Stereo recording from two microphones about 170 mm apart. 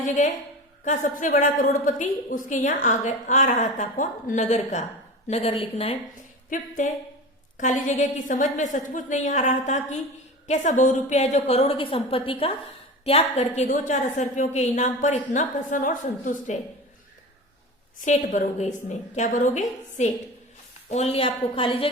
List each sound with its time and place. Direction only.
0.9 s a woman's voice: 50° left (ahead or behind)
6.5 s a woman's voice: 50° left (ahead or behind)
18.0 s a woman's voice: 45° left (ahead or behind); by 21.8 s 30° left (ahead or behind)